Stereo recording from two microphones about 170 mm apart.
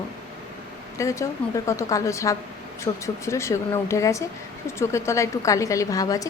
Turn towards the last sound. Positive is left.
turn(degrees=20)  # may be behind; listen again after turning